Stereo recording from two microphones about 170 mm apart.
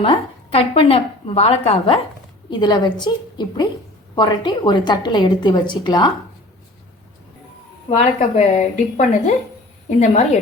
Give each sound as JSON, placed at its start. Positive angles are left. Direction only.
{"t": 0.0, "sound": "a woman's voice", "side_deg": 35}
{"t": 7.9, "sound": "a woman's voice", "side_deg": 40}